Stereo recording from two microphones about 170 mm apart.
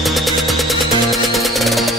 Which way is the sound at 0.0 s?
Centre (ahead or behind).